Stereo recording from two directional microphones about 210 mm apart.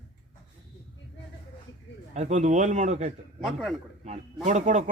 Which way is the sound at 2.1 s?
35° right (ahead or behind).